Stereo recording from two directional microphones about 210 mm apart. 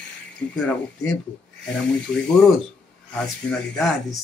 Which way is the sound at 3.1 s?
5° left (ahead or behind).